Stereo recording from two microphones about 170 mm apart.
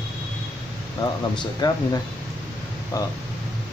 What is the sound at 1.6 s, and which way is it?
Speech, 25° left (ahead or behind).